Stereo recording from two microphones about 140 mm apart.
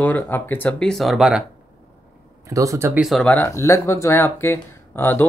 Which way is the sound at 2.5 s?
20° right (ahead or behind).